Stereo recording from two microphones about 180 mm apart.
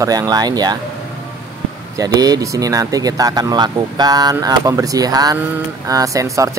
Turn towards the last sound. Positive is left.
turn(degrees=-20)  # may be behind; listen again after turning